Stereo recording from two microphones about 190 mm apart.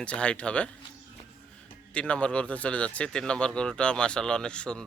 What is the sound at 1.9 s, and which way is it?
Speech, 5° left (ahead or behind).